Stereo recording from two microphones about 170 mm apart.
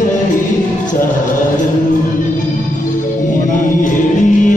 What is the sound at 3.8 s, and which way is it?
Music, 50° left (ahead or behind).